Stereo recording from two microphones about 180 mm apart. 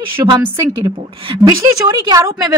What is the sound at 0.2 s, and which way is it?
A woman's voice, 20° right (ahead or behind).